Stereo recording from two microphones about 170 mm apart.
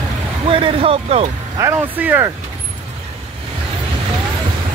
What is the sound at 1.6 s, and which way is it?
Speech, 15° right (ahead or behind).